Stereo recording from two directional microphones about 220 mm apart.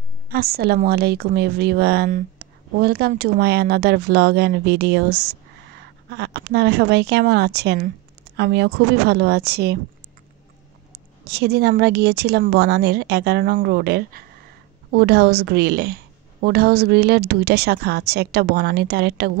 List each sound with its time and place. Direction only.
0.3 s speech: 45° right (ahead or behind)
10.9 s speech: 50° right (ahead or behind)